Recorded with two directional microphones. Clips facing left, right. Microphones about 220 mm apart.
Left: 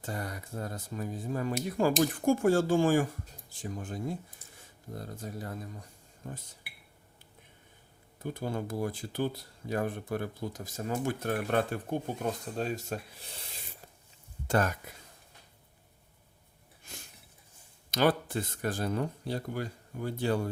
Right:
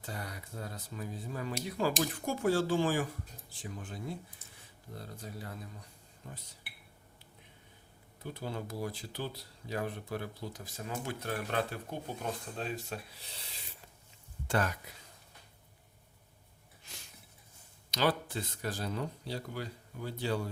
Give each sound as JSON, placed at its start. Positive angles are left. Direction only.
{"t": 0.0, "sound": "speech", "side_deg": 45}
{"t": 8.2, "sound": "speech", "side_deg": 50}
{"t": 16.9, "sound": "a sound", "side_deg": 50}
{"t": 17.9, "sound": "speech", "side_deg": 50}